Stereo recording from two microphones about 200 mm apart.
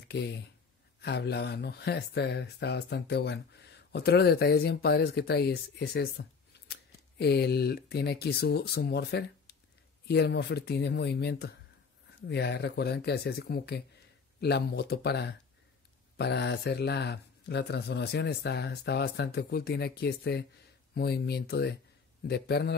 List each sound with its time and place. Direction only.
0.1 s speech: 60° left (ahead or behind)